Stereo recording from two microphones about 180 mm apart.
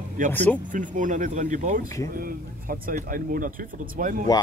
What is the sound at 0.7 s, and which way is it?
Speech, 45° right (ahead or behind).